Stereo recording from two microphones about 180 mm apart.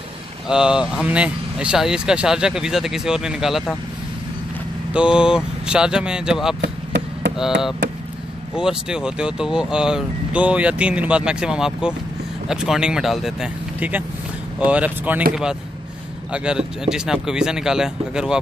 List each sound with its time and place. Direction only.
0.5 s speech: 5° right (ahead or behind)
4.9 s speech: 5° right (ahead or behind)
6.6 s basketball bounce: 80° right
8.5 s speech: 5° right (ahead or behind)
16.3 s speech: 5° right (ahead or behind)